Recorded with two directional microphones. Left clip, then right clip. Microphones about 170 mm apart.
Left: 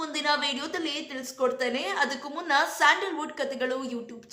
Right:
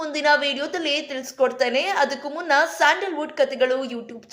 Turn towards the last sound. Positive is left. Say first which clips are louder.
# right 9 dB
turn(degrees=-15)  # may be behind; listen again after turning